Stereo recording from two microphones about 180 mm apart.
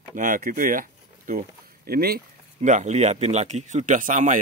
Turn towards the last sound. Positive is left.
turn(degrees=-45)  # may be behind; listen again after turning